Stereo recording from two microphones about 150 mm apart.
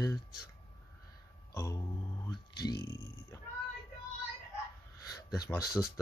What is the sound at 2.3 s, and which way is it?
Speech, 30° left (ahead or behind).